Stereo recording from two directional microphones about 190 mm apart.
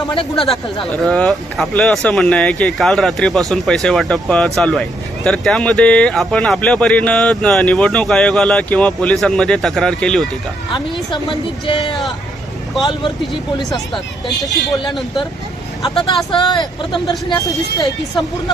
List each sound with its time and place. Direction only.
0.1 s speech: 30° left (ahead or behind)
1.0 s speech: 5° left (ahead or behind)
11.1 s speech: 25° left (ahead or behind)
16.3 s speech: 25° left (ahead or behind)